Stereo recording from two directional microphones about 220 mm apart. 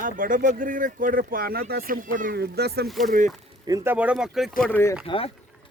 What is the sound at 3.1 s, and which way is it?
Speech, 35° right (ahead or behind).